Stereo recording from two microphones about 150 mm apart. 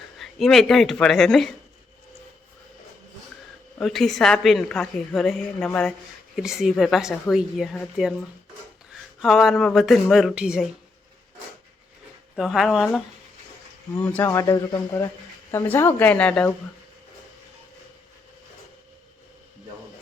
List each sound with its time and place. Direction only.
0.2 s a woman's voice: centre (ahead or behind)
3.8 s a woman's voice: centre (ahead or behind)
9.2 s a woman's voice: centre (ahead or behind)
12.4 s a woman's voice: centre (ahead or behind)
13.9 s speech: 10° left (ahead or behind)